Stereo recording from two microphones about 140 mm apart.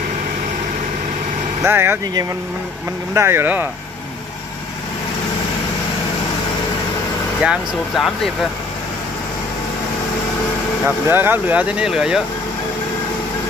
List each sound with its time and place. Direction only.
1.6 s speech: 15° right (ahead or behind)
3.2 s speech: 15° right (ahead or behind)
7.4 s speech: centre (ahead or behind)
11.1 s speech: 15° right (ahead or behind)